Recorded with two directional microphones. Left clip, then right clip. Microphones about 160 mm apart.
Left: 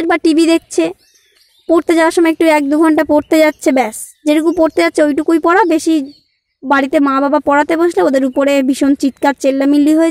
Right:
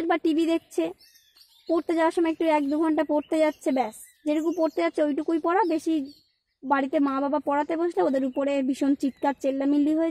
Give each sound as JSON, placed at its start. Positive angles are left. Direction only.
{"t": 0.0, "sound": "speech", "side_deg": 20}